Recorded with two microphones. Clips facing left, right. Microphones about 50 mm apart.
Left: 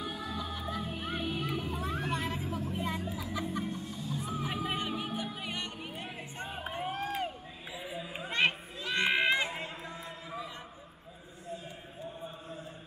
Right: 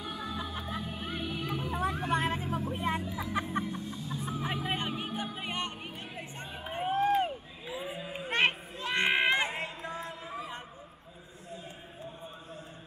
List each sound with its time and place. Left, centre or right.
0.0 s music: right
1.5 s vehicle: right
3.2 s music: right
6.4 s emergency vehicle: left
6.7 s a sound: right
8.3 s a sound: right